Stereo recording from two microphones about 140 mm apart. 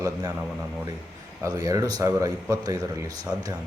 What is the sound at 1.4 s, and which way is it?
A man's voice, 25° right (ahead or behind).